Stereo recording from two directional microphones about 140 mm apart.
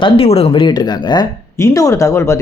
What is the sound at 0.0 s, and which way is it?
Speech, 45° left (ahead or behind).